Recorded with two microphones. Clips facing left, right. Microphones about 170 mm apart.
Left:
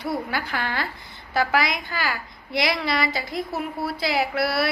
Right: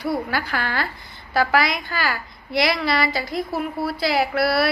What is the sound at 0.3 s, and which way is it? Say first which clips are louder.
A woman's voice: right 2 dB; 20° left (ahead or behind).